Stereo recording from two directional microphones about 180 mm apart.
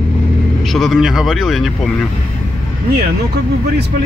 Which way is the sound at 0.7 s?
Centre (ahead or behind).